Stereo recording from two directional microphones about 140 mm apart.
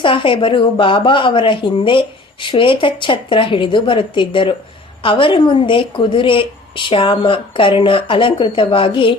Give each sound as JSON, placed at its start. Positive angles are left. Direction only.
{"t": 0.0, "sound": "speech", "side_deg": 35}